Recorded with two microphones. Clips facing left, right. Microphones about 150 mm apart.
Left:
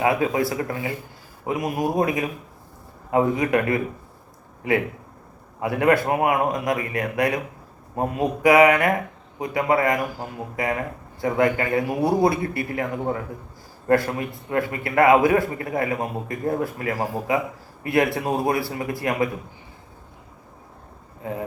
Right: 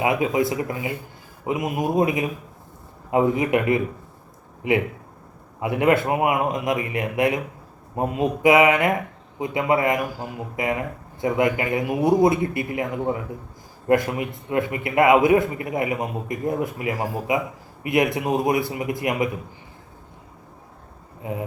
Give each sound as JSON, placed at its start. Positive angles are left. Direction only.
{"t": 0.0, "sound": "a man's voice", "side_deg": -20}